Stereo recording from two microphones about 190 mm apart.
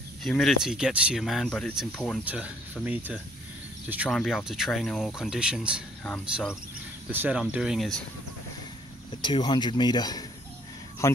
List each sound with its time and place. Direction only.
0.2 s speech: centre (ahead or behind)
9.2 s speech: 25° left (ahead or behind)